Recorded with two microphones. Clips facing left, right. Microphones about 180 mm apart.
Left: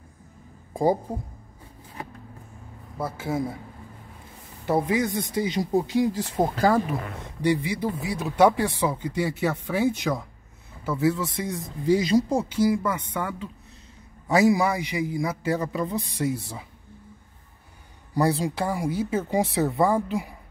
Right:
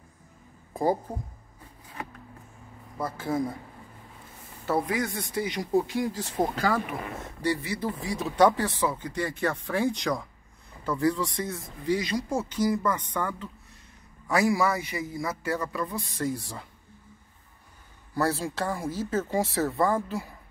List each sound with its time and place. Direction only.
1.1 s speech: 10° left (ahead or behind)
3.0 s speech: 10° left (ahead or behind)
4.6 s speech: 20° left (ahead or behind)
7.4 s speech: 15° left (ahead or behind)
11.9 s speech: 30° left (ahead or behind)
12.3 s speech: 10° left (ahead or behind)
14.5 s speech: 15° left (ahead or behind)
16.3 s speech: 5° left (ahead or behind)
18.1 s speech: 15° left (ahead or behind)